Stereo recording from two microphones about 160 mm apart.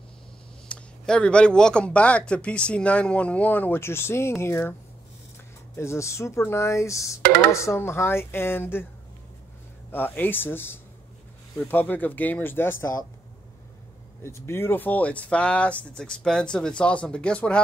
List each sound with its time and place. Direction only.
0.7 s speech: 5° left (ahead or behind)
5.8 s speech: 15° left (ahead or behind)
7.2 s a sound: 70° right (ahead or behind)
7.5 s speech: 15° left (ahead or behind)
9.8 s speech: 15° left (ahead or behind)
14.2 s speech: 15° left (ahead or behind)